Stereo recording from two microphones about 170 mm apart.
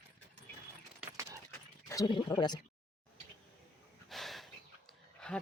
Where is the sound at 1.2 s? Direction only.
20° right (ahead or behind).